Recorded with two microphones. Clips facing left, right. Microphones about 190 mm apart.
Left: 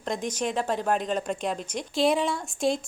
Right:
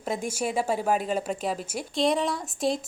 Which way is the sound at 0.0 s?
10° right (ahead or behind).